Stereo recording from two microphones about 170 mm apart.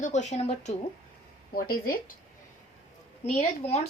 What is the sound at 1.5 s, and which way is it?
Speech, 60° left (ahead or behind).